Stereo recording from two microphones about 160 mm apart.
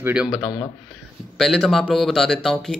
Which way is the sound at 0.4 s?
25° left (ahead or behind).